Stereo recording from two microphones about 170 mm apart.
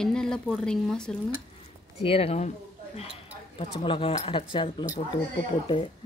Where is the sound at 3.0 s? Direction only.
30° left (ahead or behind).